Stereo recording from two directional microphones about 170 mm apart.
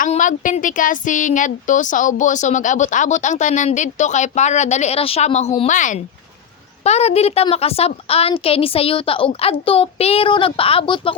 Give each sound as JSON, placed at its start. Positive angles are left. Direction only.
{"t": 0.0, "sound": "a woman's voice", "side_deg": 50}